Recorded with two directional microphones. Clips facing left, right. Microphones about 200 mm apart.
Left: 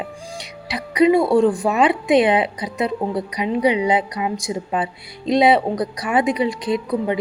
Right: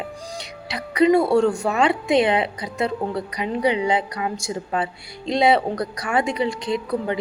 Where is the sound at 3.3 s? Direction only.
15° left (ahead or behind).